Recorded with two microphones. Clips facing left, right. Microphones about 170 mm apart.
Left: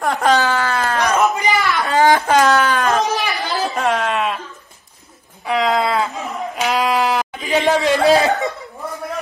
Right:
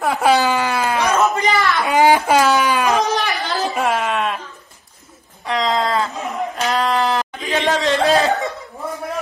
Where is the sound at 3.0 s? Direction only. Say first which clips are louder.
Even; 10° left (ahead or behind).